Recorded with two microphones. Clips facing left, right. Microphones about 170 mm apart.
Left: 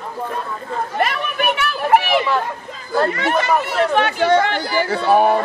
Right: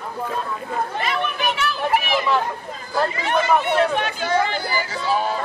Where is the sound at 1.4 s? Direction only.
60° left (ahead or behind).